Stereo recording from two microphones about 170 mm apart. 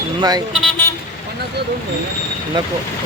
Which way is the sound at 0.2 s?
25° right (ahead or behind).